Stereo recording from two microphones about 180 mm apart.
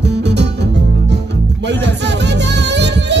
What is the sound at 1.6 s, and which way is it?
Music, 75° right (ahead or behind).